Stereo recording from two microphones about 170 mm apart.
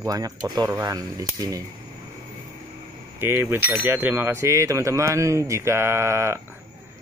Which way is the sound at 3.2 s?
15° right (ahead or behind).